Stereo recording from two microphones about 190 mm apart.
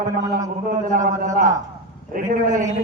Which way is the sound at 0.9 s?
45° right (ahead or behind).